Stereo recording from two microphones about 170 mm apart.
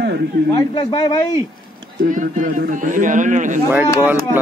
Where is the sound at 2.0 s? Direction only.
50° right (ahead or behind).